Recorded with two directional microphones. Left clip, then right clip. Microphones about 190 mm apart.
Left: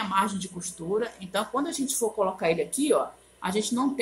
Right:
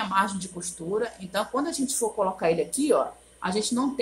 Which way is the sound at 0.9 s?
15° left (ahead or behind).